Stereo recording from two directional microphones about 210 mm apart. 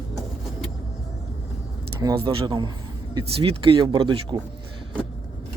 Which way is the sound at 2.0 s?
20° right (ahead or behind).